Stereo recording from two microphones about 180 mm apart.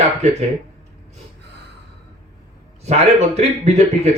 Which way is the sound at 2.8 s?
35° right (ahead or behind).